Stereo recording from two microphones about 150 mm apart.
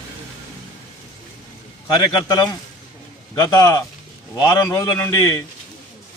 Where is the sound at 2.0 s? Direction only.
25° left (ahead or behind).